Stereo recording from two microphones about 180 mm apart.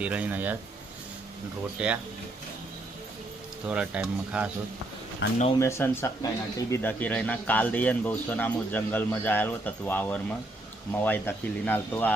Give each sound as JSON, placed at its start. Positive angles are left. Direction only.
{"t": 0.0, "sound": "speech", "side_deg": -10}
{"t": 1.8, "sound": "speech", "side_deg": -5}
{"t": 3.7, "sound": "speech", "side_deg": -5}
{"t": 5.2, "sound": "speech", "side_deg": 80}
{"t": 5.5, "sound": "speech", "side_deg": 15}